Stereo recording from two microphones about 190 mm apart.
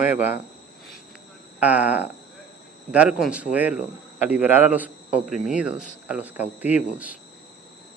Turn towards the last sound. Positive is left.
turn(degrees=-10)  # may be behind; listen again after turning